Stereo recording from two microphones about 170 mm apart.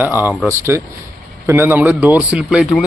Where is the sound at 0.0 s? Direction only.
10° right (ahead or behind).